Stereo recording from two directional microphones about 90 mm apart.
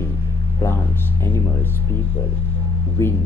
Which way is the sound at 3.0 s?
30° left (ahead or behind).